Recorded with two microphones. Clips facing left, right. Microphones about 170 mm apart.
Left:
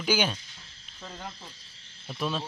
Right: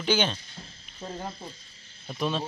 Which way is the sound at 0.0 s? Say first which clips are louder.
Right 1 dB; 10° left (ahead or behind).